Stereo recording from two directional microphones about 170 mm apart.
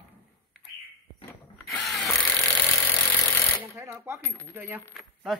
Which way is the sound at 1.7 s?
Centre (ahead or behind).